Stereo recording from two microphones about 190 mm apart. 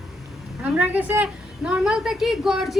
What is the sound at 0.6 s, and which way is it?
A woman's voice, 5° right (ahead or behind).